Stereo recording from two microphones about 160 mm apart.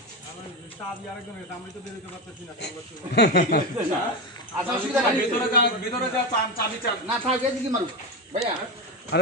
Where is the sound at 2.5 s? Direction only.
90° left.